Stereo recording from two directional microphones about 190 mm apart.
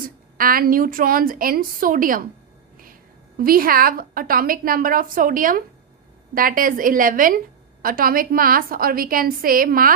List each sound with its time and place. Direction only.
0.0 s a woman's voice: 50° right (ahead or behind)
3.3 s a woman's voice: 50° right (ahead or behind)